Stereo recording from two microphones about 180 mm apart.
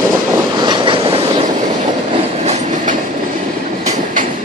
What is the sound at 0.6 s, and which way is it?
Train, 25° right (ahead or behind).